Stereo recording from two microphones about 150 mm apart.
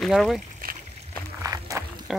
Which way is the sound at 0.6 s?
75° right (ahead or behind).